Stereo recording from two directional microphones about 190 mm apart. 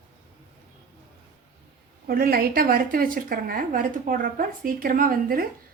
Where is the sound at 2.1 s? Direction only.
50° right (ahead or behind).